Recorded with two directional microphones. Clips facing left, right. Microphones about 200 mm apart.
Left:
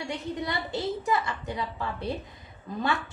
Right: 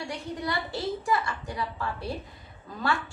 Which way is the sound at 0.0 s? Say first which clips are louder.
Left 1 dB; 20° left (ahead or behind).